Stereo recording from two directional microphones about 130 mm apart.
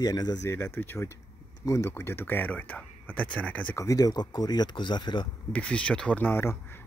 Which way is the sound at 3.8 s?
25° left (ahead or behind).